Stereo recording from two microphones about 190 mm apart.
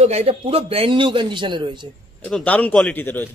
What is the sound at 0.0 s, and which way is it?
A man's voice, 35° right (ahead or behind).